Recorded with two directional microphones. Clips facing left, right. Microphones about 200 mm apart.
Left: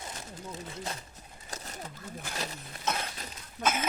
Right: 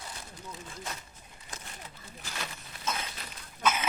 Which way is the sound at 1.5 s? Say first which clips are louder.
Left 5 dB; 40° left (ahead or behind).